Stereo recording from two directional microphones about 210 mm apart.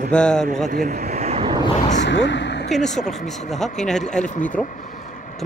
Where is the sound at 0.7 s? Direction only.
40° right (ahead or behind).